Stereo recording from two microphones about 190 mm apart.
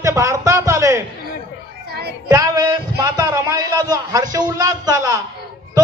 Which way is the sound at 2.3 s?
20° right (ahead or behind).